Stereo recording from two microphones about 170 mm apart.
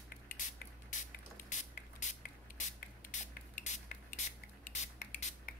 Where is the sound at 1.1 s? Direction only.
55° left (ahead or behind).